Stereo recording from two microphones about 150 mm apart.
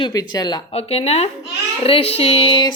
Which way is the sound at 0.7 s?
40° left (ahead or behind).